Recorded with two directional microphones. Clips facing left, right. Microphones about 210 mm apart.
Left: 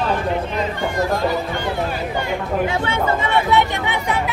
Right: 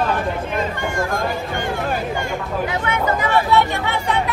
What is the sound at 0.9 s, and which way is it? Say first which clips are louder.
Speech: left 4 dB; 50° right (ahead or behind).